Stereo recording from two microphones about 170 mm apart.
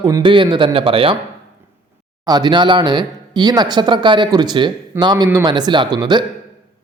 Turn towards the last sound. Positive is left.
turn(degrees=-25)  # may be behind; listen again after turning